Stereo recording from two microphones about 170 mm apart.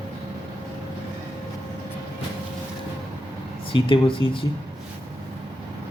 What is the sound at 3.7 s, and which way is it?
Speech, 30° left (ahead or behind).